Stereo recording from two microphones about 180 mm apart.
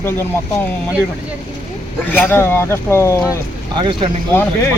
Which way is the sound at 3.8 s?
25° right (ahead or behind).